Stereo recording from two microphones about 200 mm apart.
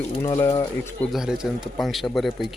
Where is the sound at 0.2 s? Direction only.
15° left (ahead or behind).